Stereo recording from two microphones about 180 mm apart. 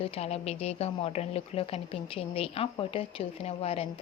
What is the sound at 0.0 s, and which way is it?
Speech, 35° left (ahead or behind).